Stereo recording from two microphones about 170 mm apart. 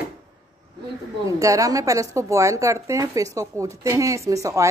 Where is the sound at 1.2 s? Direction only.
20° right (ahead or behind).